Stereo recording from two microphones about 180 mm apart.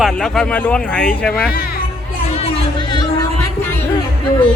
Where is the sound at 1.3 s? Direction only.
55° left (ahead or behind).